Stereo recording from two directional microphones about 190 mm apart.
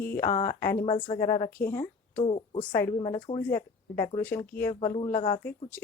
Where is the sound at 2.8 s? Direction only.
20° left (ahead or behind).